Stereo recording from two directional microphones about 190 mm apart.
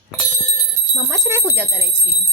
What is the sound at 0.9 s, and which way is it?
A woman's voice, 20° right (ahead or behind).